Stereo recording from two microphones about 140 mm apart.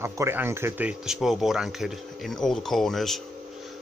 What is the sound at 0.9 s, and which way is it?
Speech, 5° right (ahead or behind).